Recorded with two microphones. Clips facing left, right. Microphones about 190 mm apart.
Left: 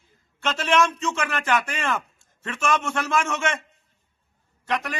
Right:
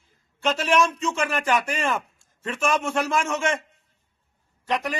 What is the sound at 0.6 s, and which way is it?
Speech, 10° right (ahead or behind).